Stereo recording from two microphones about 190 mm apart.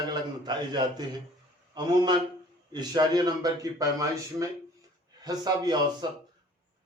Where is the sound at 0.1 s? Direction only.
20° right (ahead or behind).